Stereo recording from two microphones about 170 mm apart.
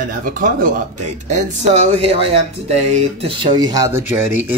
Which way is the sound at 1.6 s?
40° right (ahead or behind).